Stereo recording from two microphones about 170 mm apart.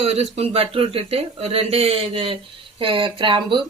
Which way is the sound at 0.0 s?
35° right (ahead or behind).